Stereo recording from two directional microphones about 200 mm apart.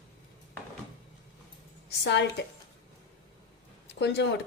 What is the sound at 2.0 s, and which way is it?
Speech, 60° left (ahead or behind).